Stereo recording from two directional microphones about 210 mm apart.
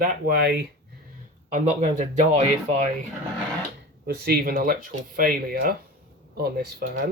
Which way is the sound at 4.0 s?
50° right (ahead or behind).